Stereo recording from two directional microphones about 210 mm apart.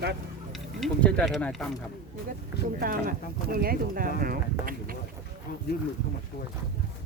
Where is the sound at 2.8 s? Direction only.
45° right (ahead or behind).